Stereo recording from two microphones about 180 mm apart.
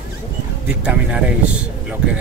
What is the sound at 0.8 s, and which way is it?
Speech, 5° right (ahead or behind).